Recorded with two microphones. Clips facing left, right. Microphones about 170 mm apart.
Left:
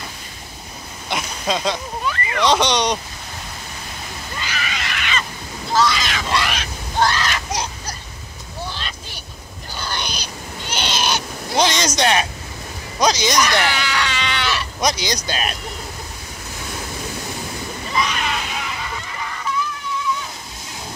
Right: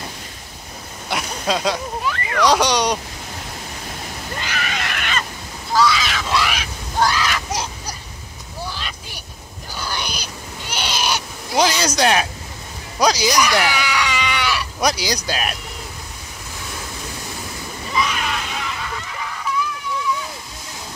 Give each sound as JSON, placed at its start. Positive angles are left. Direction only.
{"t": 1.1, "sound": "a sound", "side_deg": -5}
{"t": 2.4, "sound": "speech", "side_deg": -10}
{"t": 4.4, "sound": "a sound", "side_deg": -55}
{"t": 5.8, "sound": "speech", "side_deg": -5}
{"t": 8.7, "sound": "vehicle", "side_deg": -10}
{"t": 9.8, "sound": "owl", "side_deg": -5}
{"t": 12.0, "sound": "speech", "side_deg": -5}
{"t": 13.0, "sound": "goat", "side_deg": -10}
{"t": 15.2, "sound": "speech", "side_deg": -5}
{"t": 17.9, "sound": "a sound", "side_deg": -5}